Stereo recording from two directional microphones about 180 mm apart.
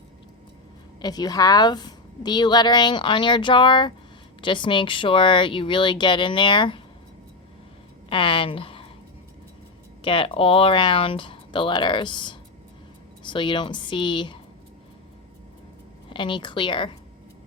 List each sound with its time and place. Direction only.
1.0 s a woman's voice: 20° left (ahead or behind)
8.1 s a woman's voice: 30° left (ahead or behind)
10.0 s a woman's voice: 30° left (ahead or behind)
16.0 s a woman's voice: 25° left (ahead or behind)